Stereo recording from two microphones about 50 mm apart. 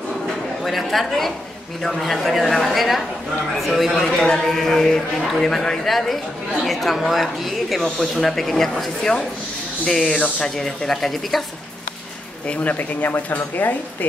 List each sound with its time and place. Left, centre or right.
0.7 s a woman's voice: centre
12.4 s speech: left